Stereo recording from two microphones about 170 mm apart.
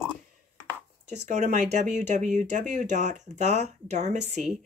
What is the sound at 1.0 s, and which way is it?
Speech, 45° right (ahead or behind).